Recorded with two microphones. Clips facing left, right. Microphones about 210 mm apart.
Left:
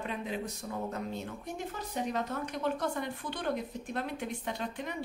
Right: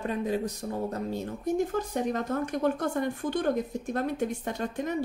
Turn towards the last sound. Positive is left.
turn(degrees=-45)  # may be behind; listen again after turning